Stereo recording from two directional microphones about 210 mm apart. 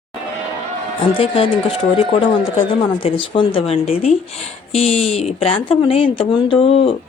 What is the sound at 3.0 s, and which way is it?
Speech, 25° left (ahead or behind).